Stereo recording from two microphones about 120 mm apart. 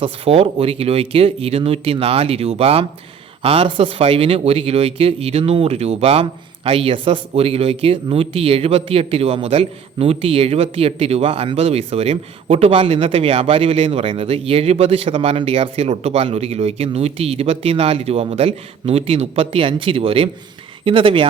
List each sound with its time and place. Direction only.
0.0 s speech: 55° right (ahead or behind)